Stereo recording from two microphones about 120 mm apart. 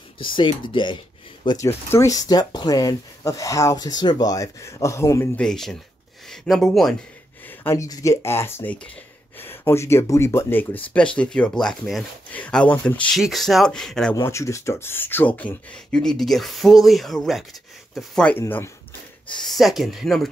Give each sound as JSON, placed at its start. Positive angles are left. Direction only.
{"t": 0.2, "sound": "speech", "side_deg": 45}
{"t": 1.6, "sound": "speech", "side_deg": 20}
{"t": 5.4, "sound": "speech", "side_deg": 5}
{"t": 7.7, "sound": "speech", "side_deg": 25}
{"t": 14.1, "sound": "speech", "side_deg": 25}
{"t": 19.4, "sound": "speech", "side_deg": 0}